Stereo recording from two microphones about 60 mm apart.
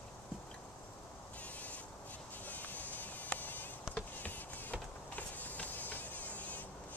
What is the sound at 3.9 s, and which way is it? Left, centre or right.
Insect, left.